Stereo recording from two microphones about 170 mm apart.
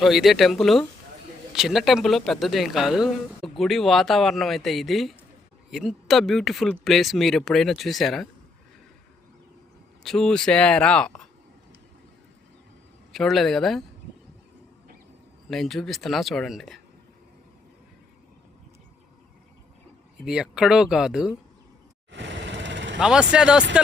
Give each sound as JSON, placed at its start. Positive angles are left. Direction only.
{"t": 0.0, "sound": "speech", "side_deg": 0}
{"t": 10.0, "sound": "speech", "side_deg": 5}
{"t": 13.1, "sound": "speech", "side_deg": 0}
{"t": 15.4, "sound": "speech", "side_deg": 0}
{"t": 20.2, "sound": "speech", "side_deg": -5}
{"t": 22.1, "sound": "vehicle", "side_deg": -90}
{"t": 23.0, "sound": "speech", "side_deg": -5}